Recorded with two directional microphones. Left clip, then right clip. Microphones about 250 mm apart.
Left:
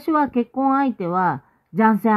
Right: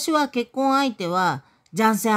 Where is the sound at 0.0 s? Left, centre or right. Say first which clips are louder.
Left 2 dB; centre.